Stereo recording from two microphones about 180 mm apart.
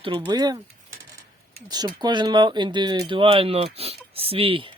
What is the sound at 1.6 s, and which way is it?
Speech, 20° right (ahead or behind).